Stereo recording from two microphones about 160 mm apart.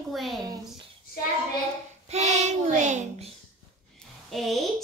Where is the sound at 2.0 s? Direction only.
45° right (ahead or behind).